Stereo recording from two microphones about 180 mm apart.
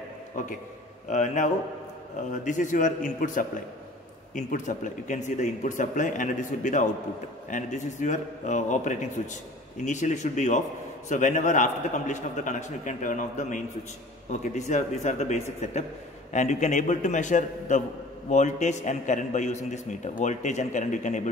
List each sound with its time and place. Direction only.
0.3 s a man's voice: 45° left (ahead or behind)